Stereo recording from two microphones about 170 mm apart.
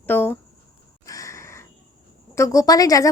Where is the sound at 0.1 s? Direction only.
10° left (ahead or behind).